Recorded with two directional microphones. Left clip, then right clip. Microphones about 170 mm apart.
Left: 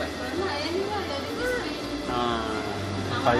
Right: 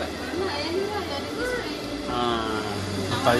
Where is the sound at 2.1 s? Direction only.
5° right (ahead or behind).